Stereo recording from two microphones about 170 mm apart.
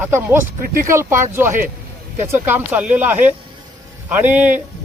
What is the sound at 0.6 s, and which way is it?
Speech, 55° right (ahead or behind).